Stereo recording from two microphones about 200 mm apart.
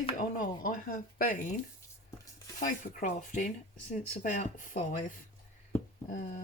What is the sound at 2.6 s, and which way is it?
Speech, 40° left (ahead or behind).